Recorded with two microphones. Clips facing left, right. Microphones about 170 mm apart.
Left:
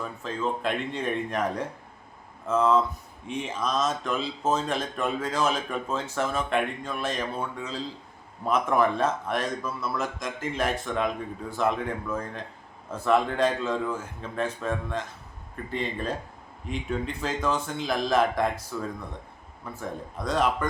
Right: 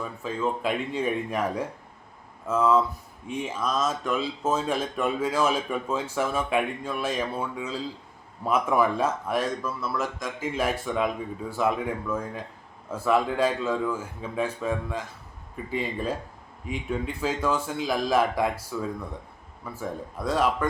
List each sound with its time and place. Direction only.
0.0 s a man's voice: 10° right (ahead or behind)